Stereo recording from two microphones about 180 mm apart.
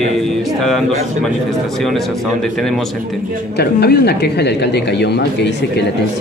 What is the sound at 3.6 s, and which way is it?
Speech, 60° left (ahead or behind).